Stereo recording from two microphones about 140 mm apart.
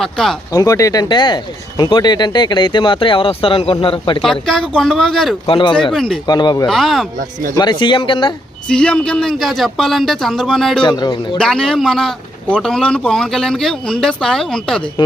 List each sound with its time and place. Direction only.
0.0 s a man's voice: 5° left (ahead or behind)
0.5 s speech: 25° left (ahead or behind)
4.2 s a man's voice: centre (ahead or behind)
5.5 s speech: 40° left (ahead or behind)
5.9 s a man's voice: 5° left (ahead or behind)
6.2 s speech: 30° left (ahead or behind)
6.7 s a man's voice: centre (ahead or behind)
7.5 s speech: 30° left (ahead or behind)
8.6 s a man's voice: 5° left (ahead or behind)
10.8 s speech: 30° left (ahead or behind)
11.3 s a man's voice: 5° left (ahead or behind)